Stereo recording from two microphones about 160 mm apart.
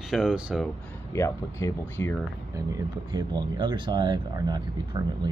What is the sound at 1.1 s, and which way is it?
Speech, 15° left (ahead or behind).